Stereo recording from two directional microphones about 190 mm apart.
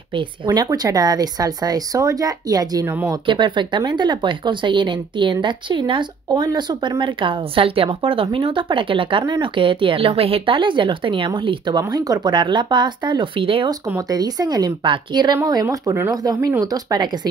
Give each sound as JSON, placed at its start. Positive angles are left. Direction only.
{"t": 0.1, "sound": "speech", "side_deg": -20}